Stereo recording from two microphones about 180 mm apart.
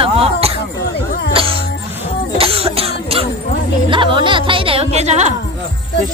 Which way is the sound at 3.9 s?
25° right (ahead or behind).